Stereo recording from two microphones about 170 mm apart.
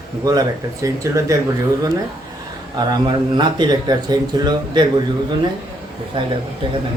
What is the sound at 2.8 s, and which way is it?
Speech, 25° right (ahead or behind).